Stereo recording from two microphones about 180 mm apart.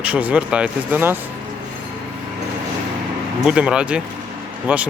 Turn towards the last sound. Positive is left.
turn(degrees=-10)  # may be behind; listen again after turning